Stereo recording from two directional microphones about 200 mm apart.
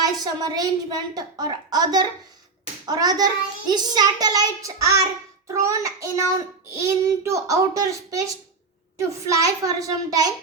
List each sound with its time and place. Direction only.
0.0 s a child's voice: 20° right (ahead or behind)